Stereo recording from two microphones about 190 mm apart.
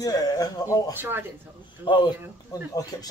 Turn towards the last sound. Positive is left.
turn(degrees=20)  # may be behind; listen again after turning